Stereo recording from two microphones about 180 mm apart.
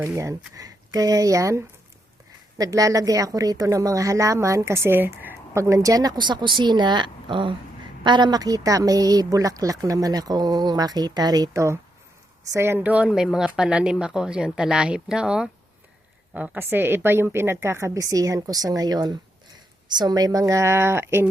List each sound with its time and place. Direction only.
0.0 s a woman's voice: 15° right (ahead or behind)